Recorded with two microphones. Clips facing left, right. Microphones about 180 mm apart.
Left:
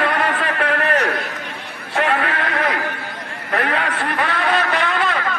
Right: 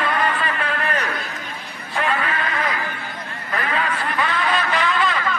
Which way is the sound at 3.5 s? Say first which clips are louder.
Left 3 dB; 75° left (ahead or behind).